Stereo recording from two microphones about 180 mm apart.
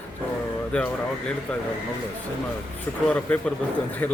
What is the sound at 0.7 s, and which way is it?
Speech, 5° left (ahead or behind).